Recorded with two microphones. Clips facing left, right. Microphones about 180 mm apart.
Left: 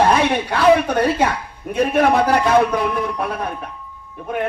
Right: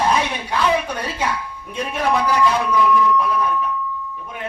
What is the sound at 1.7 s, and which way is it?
Speech, 55° left (ahead or behind).